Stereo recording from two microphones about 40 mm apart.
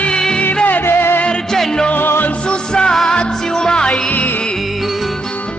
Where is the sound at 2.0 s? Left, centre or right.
Left.